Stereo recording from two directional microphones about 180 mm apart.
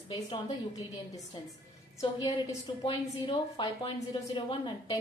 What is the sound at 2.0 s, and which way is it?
Speech, 20° left (ahead or behind).